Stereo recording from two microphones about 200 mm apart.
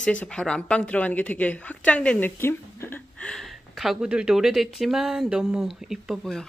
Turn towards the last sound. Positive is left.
turn(degrees=0)  # may be behind; listen again after turning